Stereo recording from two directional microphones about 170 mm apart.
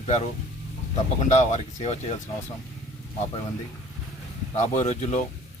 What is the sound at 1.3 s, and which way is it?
Speech, 40° left (ahead or behind).